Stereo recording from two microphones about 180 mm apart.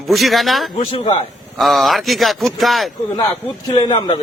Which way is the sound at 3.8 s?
25° left (ahead or behind).